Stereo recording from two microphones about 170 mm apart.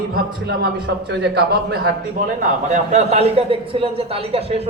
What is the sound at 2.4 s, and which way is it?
A man's voice, 45° right (ahead or behind).